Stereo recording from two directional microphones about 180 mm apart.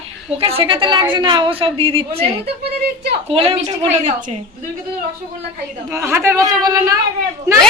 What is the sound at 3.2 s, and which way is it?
A woman's voice, 30° right (ahead or behind).